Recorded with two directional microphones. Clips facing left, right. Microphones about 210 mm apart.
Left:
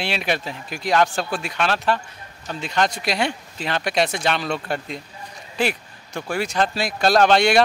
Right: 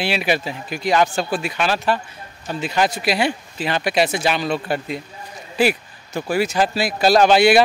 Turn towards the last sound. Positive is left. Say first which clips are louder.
# right 3 dB
turn(degrees=-5)  # may be behind; listen again after turning